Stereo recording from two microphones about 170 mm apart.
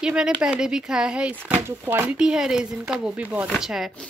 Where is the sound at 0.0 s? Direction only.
5° right (ahead or behind).